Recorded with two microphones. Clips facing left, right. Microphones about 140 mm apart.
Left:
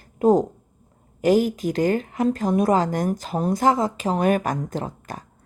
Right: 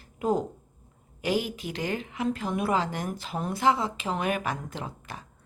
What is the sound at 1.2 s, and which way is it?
Speech, 45° left (ahead or behind).